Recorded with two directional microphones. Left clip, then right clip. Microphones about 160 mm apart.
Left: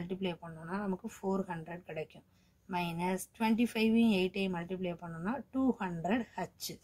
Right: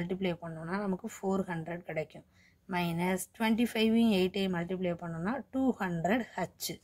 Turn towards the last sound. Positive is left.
turn(degrees=-30)  # may be behind; listen again after turning